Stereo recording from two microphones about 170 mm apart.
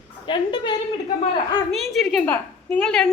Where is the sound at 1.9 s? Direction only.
Centre (ahead or behind).